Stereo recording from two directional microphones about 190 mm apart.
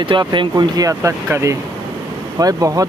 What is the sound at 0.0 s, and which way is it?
Speech, 25° right (ahead or behind).